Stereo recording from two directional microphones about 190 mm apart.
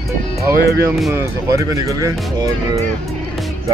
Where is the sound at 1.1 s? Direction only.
15° right (ahead or behind).